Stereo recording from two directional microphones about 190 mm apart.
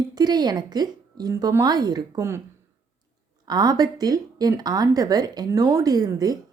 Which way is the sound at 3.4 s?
20° right (ahead or behind).